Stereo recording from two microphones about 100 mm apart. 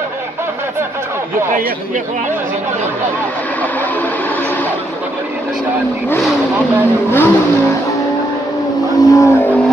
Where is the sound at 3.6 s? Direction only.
15° left (ahead or behind).